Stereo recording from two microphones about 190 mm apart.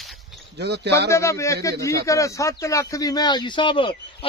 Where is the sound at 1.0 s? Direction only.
15° left (ahead or behind).